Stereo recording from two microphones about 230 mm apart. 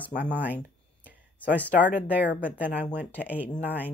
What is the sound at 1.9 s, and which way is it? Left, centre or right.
Speech, centre.